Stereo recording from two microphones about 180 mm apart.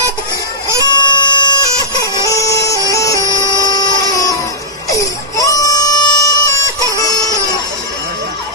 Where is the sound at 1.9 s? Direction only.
20° left (ahead or behind).